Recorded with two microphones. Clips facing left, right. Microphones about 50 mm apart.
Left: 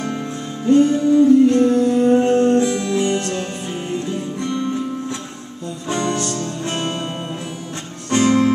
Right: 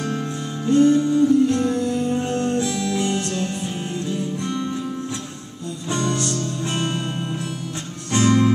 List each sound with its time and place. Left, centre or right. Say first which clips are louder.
0.7 s music: left 2 dB; centre
4.4 s music: left 3 dB; left
5.9 s music: left 2 dB; centre
6.7 s music: left 1 dB; centre
8.1 s music: left 3 dB; centre